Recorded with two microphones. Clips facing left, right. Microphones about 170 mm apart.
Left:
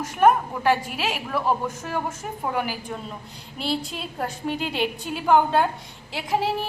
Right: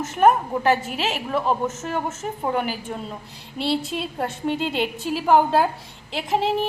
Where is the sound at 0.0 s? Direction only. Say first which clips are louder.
Right 1 dB; 5° right (ahead or behind).